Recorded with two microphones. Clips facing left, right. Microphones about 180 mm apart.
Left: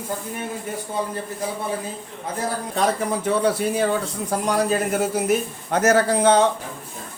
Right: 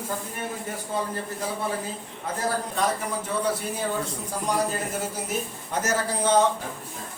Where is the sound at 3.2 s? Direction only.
80° left.